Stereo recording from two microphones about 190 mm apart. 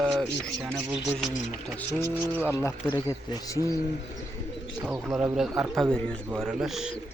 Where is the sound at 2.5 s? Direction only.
10° left (ahead or behind).